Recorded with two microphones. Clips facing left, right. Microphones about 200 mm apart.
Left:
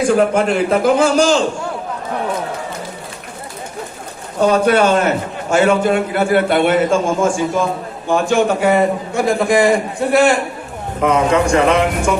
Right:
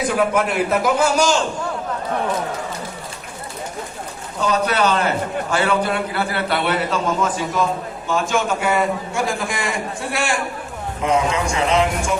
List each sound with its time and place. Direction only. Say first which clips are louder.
0.2 s a man's voice: left 4 dB; 55° left (ahead or behind)
4.4 s a man's voice: left 7 dB; 55° left (ahead or behind)